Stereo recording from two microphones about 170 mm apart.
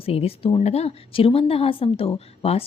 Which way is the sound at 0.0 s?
35° left (ahead or behind).